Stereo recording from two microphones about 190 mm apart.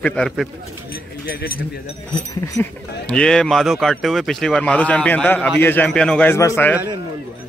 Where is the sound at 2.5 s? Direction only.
10° left (ahead or behind).